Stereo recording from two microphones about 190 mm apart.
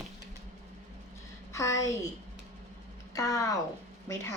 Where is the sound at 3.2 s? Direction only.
15° left (ahead or behind).